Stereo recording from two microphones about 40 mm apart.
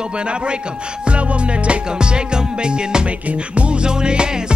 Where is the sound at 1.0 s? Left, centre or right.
Right.